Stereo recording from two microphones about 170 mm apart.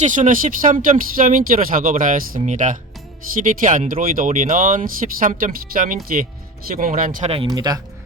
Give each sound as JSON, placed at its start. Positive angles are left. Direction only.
{"t": 0.0, "sound": "speech", "side_deg": -50}
{"t": 7.5, "sound": "speech", "side_deg": -20}